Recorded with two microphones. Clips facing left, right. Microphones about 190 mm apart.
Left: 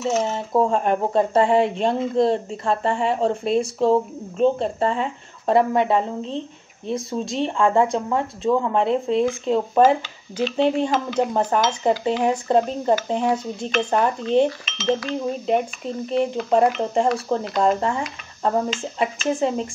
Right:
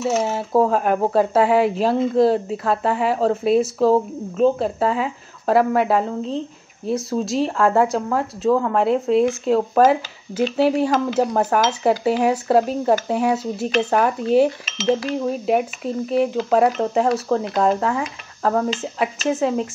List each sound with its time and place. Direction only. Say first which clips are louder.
0.0 s speech: right 2 dB; 5° right (ahead or behind)
14.9 s speech: right 2 dB; 25° right (ahead or behind)
15.4 s speech: right 2 dB; 5° right (ahead or behind)